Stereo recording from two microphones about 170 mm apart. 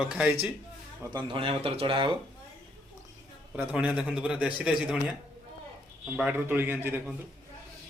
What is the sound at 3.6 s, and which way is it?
A man's voice, 10° right (ahead or behind).